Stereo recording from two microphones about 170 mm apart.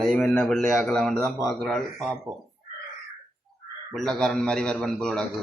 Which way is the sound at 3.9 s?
Centre (ahead or behind).